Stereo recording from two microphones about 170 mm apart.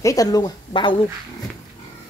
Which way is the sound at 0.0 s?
20° left (ahead or behind).